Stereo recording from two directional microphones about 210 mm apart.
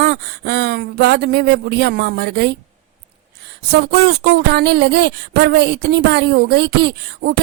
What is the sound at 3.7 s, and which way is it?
Speech, 50° right (ahead or behind).